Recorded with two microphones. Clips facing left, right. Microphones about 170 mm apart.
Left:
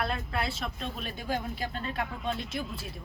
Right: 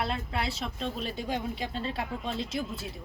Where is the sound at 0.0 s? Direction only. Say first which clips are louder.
Even; 25° right (ahead or behind).